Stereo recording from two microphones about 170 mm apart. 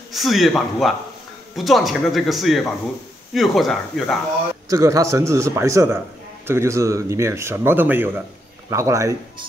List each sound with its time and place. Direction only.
0.1 s speech: centre (ahead or behind)
4.6 s speech: 20° right (ahead or behind)